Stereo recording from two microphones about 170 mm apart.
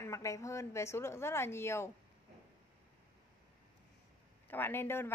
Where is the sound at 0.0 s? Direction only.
20° left (ahead or behind).